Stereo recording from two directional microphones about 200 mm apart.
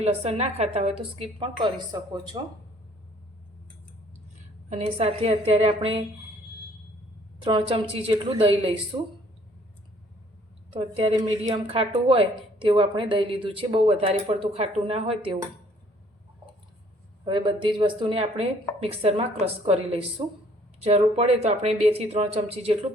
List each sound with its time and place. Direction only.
0.0 s a woman's voice: 30° right (ahead or behind)
4.7 s a woman's voice: 30° right (ahead or behind)
7.4 s a woman's voice: 25° right (ahead or behind)
10.7 s a woman's voice: 30° right (ahead or behind)
17.2 s a woman's voice: 25° right (ahead or behind)